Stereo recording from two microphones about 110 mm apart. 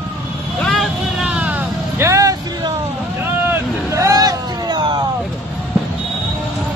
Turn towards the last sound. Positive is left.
turn(degrees=-45)  # may be behind; listen again after turning